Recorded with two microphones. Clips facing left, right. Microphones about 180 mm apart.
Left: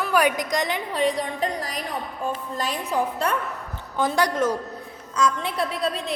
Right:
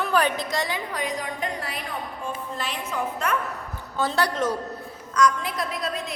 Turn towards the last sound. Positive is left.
turn(degrees=30)  # may be behind; listen again after turning